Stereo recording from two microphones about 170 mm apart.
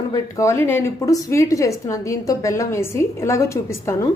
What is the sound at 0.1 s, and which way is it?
A woman's voice, 20° left (ahead or behind).